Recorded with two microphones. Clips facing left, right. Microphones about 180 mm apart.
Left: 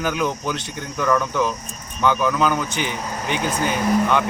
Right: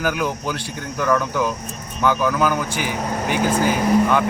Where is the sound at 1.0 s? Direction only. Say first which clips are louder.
Even; 5° right (ahead or behind).